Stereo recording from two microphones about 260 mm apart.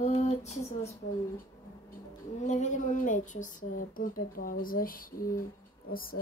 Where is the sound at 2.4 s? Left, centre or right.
Left.